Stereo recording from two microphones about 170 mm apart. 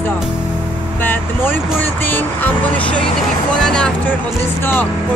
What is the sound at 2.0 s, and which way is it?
Music, 10° left (ahead or behind).